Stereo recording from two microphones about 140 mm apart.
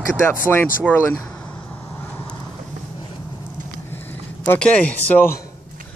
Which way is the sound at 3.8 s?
15° left (ahead or behind).